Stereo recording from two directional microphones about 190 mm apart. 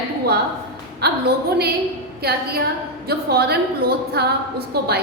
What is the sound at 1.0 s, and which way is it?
Speech, 60° right (ahead or behind).